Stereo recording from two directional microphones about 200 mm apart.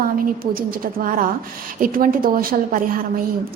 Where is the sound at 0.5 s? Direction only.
45° right (ahead or behind).